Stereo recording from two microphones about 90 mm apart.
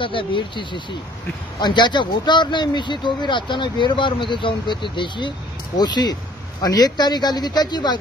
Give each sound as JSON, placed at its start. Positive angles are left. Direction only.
{"t": 0.0, "sound": "speech", "side_deg": 70}